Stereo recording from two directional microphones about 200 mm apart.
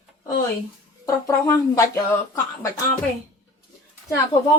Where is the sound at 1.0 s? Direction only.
15° left (ahead or behind).